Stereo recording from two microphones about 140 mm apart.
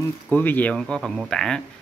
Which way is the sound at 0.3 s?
15° left (ahead or behind).